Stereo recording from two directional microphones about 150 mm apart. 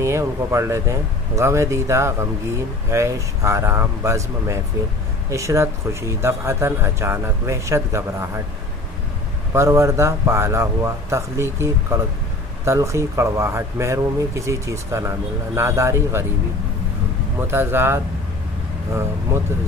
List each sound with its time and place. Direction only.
0.0 s a man's voice: 20° right (ahead or behind)
9.5 s speech: 20° right (ahead or behind)
17.5 s a man's voice: 15° right (ahead or behind)